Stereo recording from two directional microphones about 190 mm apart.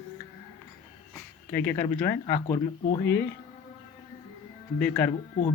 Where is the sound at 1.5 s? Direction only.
10° left (ahead or behind).